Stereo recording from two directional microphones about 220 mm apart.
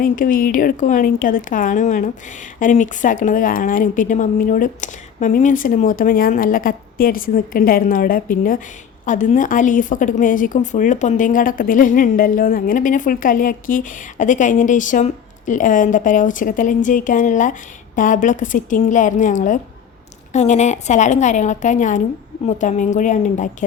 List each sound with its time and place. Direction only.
0.0 s a woman's voice: 40° left (ahead or behind)